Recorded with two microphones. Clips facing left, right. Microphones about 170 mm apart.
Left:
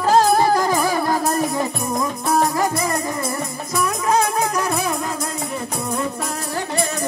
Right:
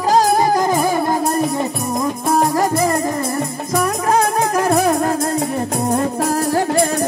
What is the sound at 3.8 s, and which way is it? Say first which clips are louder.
Music: right 2 dB; 45° right (ahead or behind).